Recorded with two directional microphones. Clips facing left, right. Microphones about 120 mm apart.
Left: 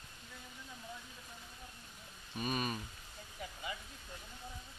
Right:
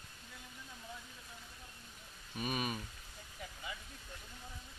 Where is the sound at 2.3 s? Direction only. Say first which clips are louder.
Left 1 dB; 5° right (ahead or behind).